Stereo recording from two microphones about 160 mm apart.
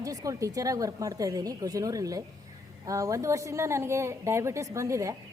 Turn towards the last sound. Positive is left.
turn(degrees=-20)  # may be behind; listen again after turning